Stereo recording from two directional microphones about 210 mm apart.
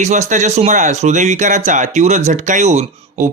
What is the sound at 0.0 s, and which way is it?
Speech, 35° right (ahead or behind).